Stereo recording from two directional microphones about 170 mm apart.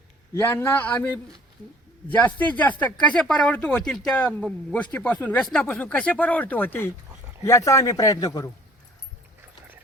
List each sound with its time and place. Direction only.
0.3 s speech: 15° left (ahead or behind)